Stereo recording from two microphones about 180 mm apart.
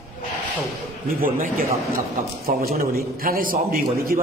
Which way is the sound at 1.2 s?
50° right (ahead or behind).